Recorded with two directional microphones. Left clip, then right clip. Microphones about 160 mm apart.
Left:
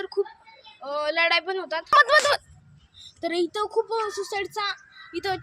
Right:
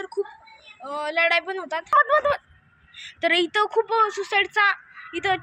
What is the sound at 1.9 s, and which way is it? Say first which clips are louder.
Speech: left 1 dB; 70° left (ahead or behind).